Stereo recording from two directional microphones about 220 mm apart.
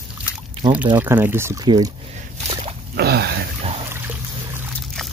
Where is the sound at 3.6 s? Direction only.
25° right (ahead or behind).